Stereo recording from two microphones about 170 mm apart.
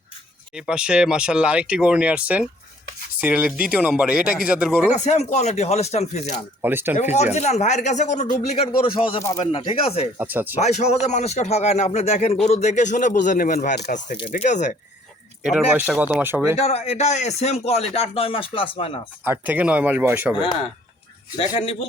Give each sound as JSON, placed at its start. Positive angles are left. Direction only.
{"t": 0.5, "sound": "speech", "side_deg": -5}
{"t": 4.9, "sound": "speech", "side_deg": 40}
{"t": 6.6, "sound": "speech", "side_deg": -10}
{"t": 6.9, "sound": "speech", "side_deg": 40}
{"t": 10.2, "sound": "speech", "side_deg": -10}
{"t": 10.6, "sound": "speech", "side_deg": 40}
{"t": 14.2, "sound": "speech", "side_deg": 35}
{"t": 15.4, "sound": "speech", "side_deg": -5}
{"t": 16.6, "sound": "speech", "side_deg": 40}
{"t": 19.2, "sound": "speech", "side_deg": -10}
{"t": 21.6, "sound": "speech", "side_deg": 35}